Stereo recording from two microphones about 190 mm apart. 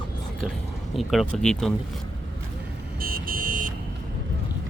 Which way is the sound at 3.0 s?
50° right (ahead or behind).